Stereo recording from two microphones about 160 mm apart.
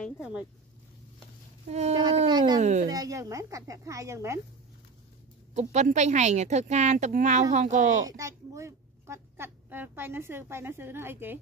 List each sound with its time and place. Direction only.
0.2 s speech: 5° right (ahead or behind)
1.7 s speech: 45° right (ahead or behind)
2.2 s speech: 25° right (ahead or behind)
2.6 s speech: 45° right (ahead or behind)
2.9 s speech: 20° right (ahead or behind)
5.5 s speech: 45° right (ahead or behind)
8.1 s speech: 20° right (ahead or behind)